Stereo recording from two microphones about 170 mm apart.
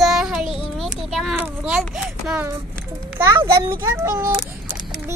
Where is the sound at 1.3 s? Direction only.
10° right (ahead or behind).